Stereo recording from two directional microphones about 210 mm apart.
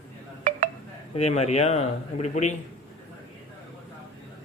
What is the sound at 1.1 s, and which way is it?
Speech, 30° left (ahead or behind).